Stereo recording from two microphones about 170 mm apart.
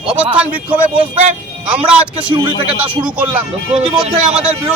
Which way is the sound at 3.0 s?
10° right (ahead or behind).